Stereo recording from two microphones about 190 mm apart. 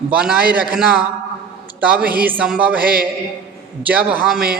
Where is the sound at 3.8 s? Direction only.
10° right (ahead or behind).